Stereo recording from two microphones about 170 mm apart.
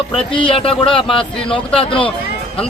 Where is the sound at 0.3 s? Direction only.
30° left (ahead or behind).